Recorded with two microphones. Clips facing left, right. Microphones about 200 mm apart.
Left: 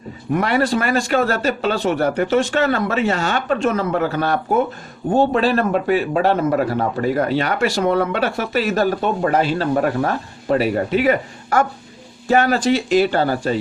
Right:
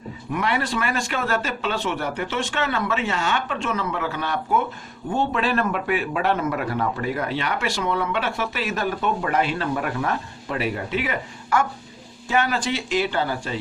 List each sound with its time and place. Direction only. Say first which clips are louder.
0.3 s a man's voice: left 6 dB; 40° left (ahead or behind)